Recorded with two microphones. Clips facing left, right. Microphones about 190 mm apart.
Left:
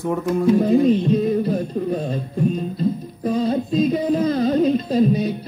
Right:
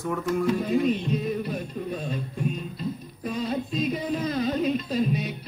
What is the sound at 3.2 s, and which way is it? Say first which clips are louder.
Child singing: left 8 dB; 35° left (ahead or behind).